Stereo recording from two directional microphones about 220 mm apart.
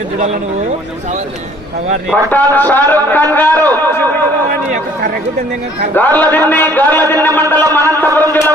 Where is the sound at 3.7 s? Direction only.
10° left (ahead or behind).